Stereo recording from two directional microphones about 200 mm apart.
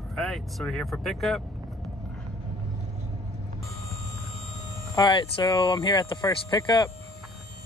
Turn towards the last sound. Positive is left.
turn(degrees=20)  # may be behind; listen again after turning